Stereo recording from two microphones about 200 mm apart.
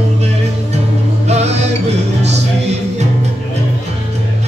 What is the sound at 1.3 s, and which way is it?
Music, 35° right (ahead or behind).